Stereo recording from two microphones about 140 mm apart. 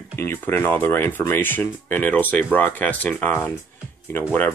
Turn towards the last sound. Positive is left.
turn(degrees=15)  # may be behind; listen again after turning